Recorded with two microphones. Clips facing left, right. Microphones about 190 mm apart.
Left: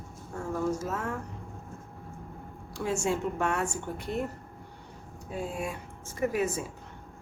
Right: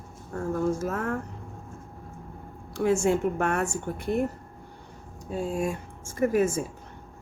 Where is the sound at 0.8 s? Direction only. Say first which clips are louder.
Right 4 dB; 55° right (ahead or behind).